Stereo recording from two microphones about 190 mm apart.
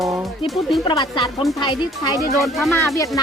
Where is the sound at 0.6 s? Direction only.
25° left (ahead or behind).